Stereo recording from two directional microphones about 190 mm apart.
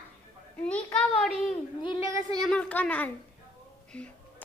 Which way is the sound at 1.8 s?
25° left (ahead or behind).